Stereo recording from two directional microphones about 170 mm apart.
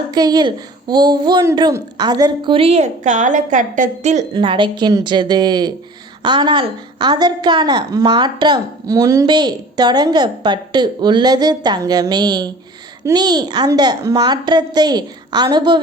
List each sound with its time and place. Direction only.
0.1 s a woman's voice: 25° right (ahead or behind); by 4.2 s 45° right (ahead or behind)
4.4 s a woman's voice: 30° right (ahead or behind)